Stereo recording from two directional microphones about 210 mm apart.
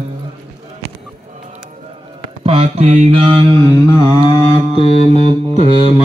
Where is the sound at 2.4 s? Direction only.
30° right (ahead or behind).